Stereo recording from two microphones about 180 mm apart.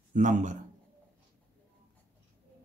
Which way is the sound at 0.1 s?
45° right (ahead or behind).